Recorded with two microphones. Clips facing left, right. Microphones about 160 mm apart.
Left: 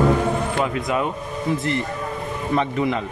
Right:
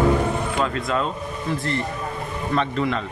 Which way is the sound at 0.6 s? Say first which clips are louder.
Left 1 dB; 15° left (ahead or behind).